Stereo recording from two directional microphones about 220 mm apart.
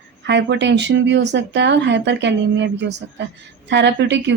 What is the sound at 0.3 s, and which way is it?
Speech, 50° right (ahead or behind).